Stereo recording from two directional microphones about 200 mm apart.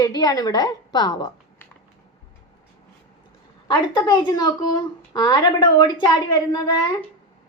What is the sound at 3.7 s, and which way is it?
A woman's voice, 20° left (ahead or behind).